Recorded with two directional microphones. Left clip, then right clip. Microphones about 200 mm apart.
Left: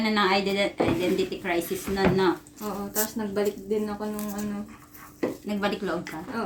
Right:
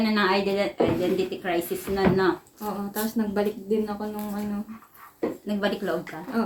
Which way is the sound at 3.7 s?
15° right (ahead or behind).